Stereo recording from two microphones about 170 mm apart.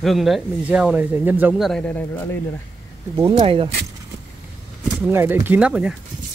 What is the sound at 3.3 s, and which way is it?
Speech, 35° right (ahead or behind).